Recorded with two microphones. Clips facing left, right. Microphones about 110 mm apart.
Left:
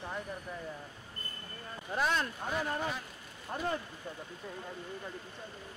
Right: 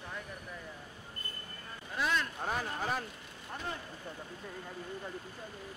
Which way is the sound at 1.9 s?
40° left (ahead or behind).